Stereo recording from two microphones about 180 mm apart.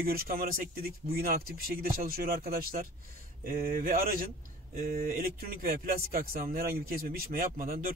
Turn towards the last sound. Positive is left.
turn(degrees=-50)  # may be behind; listen again after turning